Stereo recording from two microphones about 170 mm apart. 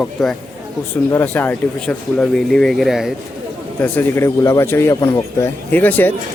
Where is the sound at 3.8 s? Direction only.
10° left (ahead or behind).